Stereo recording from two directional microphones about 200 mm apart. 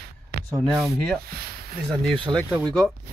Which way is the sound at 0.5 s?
Centre (ahead or behind).